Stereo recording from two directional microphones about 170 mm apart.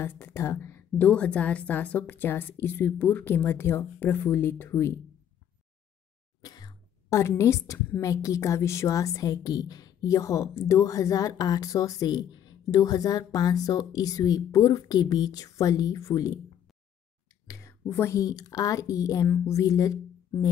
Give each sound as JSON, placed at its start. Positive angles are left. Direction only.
{"t": 0.0, "sound": "a woman's voice", "side_deg": 15}
{"t": 6.4, "sound": "a woman's voice", "side_deg": 20}
{"t": 17.5, "sound": "speech", "side_deg": 20}